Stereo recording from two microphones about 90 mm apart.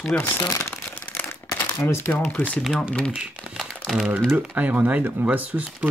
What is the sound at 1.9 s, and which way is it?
Speech, 25° left (ahead or behind).